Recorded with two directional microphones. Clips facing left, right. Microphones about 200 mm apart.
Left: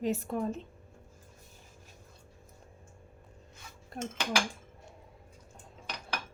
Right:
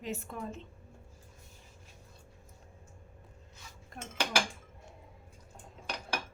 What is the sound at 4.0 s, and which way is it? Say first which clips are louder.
Speech: left 9 dB; 35° left (ahead or behind).